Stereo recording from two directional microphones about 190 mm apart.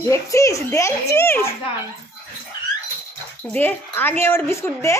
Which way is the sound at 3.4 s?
10° left (ahead or behind).